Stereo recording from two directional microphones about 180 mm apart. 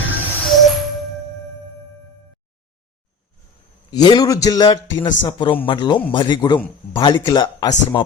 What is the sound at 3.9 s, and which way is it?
A man's voice, 25° left (ahead or behind).